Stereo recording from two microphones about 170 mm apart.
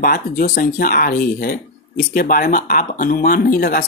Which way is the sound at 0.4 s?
60° left (ahead or behind).